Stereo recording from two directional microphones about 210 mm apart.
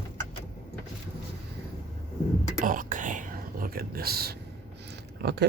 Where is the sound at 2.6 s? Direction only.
40° right (ahead or behind).